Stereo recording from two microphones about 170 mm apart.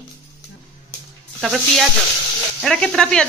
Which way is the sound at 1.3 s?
Centre (ahead or behind).